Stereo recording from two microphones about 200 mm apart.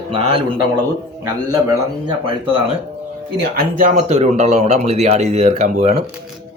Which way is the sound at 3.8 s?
40° right (ahead or behind).